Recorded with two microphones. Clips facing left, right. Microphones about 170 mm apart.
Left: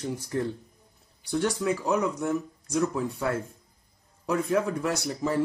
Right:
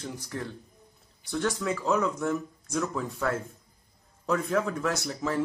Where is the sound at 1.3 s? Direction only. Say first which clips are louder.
Left 3 dB; 15° left (ahead or behind).